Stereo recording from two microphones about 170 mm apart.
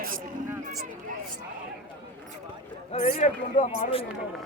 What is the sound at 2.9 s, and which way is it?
Speech, 45° left (ahead or behind).